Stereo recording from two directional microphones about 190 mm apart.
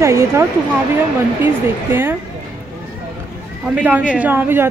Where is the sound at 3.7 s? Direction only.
5° right (ahead or behind).